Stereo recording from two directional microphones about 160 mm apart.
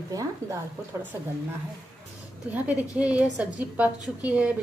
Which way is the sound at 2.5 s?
10° right (ahead or behind).